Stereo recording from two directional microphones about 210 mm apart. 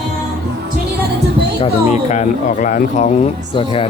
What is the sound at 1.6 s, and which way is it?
Speech, 35° left (ahead or behind).